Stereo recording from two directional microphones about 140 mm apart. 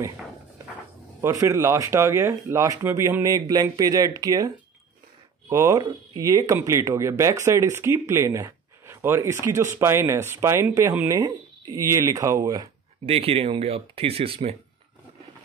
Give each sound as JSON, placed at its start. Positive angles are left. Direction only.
{"t": 1.2, "sound": "speech", "side_deg": -25}
{"t": 5.5, "sound": "speech", "side_deg": -25}
{"t": 13.0, "sound": "speech", "side_deg": -45}